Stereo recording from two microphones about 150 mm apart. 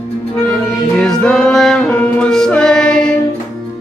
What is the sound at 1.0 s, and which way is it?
Music, 5° left (ahead or behind).